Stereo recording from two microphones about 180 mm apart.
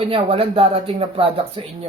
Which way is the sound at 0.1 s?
30° right (ahead or behind).